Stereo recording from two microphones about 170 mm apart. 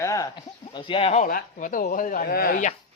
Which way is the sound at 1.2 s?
50° left (ahead or behind).